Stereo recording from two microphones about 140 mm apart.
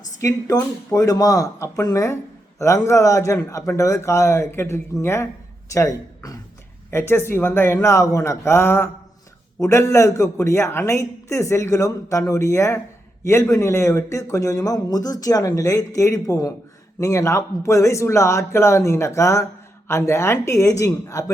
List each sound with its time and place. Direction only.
0.2 s a man's voice: 25° left (ahead or behind)